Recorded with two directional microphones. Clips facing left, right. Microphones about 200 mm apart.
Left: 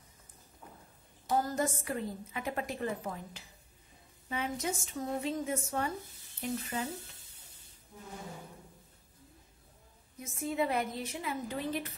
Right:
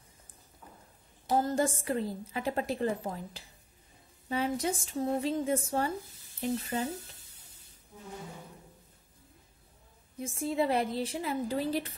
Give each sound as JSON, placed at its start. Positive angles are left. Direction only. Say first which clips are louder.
{"t": 1.3, "sound": "a woman's voice", "louder": "right 3 dB", "side_deg": -30}
{"t": 10.1, "sound": "a woman's voice", "louder": "right 3 dB", "side_deg": -30}